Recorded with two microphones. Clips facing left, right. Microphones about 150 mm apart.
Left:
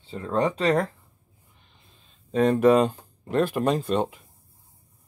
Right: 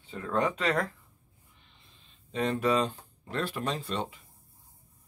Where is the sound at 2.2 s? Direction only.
50° left (ahead or behind).